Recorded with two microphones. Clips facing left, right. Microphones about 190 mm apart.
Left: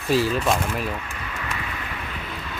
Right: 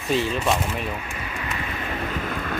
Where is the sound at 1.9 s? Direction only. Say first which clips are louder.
Right 6 dB; 45° right (ahead or behind).